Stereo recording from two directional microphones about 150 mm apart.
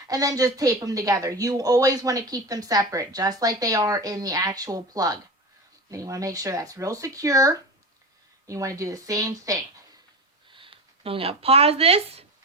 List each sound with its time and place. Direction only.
0.1 s speech: 25° right (ahead or behind)
10.5 s speech: 35° right (ahead or behind)